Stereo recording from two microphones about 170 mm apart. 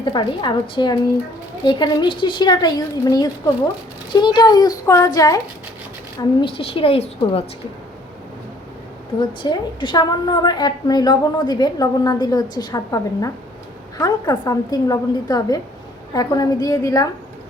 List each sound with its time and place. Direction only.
0.0 s a woman's voice: 25° left (ahead or behind)
6.4 s a woman's voice: 35° left (ahead or behind)
9.4 s a woman's voice: 25° left (ahead or behind)